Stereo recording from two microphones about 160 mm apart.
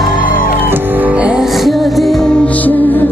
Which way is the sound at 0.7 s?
10° right (ahead or behind).